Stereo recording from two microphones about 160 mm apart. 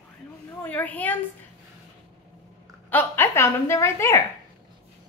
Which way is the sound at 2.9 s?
15° left (ahead or behind).